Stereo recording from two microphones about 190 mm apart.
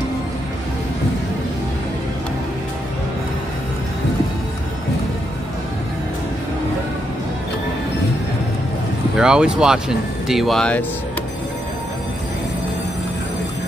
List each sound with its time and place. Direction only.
9.1 s speech: 5° right (ahead or behind)